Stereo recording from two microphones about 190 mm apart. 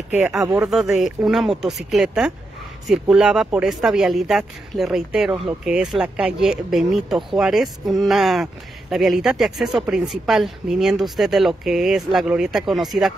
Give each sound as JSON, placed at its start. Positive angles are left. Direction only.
{"t": 0.1, "sound": "speech", "side_deg": 0}